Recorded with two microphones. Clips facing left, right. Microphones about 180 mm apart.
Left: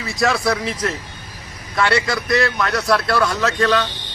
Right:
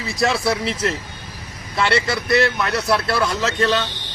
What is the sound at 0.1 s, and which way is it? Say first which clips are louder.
Speech: left 1 dB; centre (ahead or behind).